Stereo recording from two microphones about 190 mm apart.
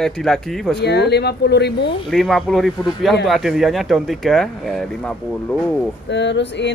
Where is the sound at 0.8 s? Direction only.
60° left (ahead or behind).